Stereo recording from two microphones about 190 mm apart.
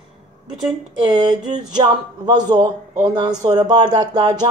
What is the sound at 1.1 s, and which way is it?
A man's voice, 25° right (ahead or behind).